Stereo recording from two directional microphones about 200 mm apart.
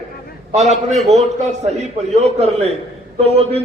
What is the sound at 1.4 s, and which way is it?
A man's voice, 35° right (ahead or behind).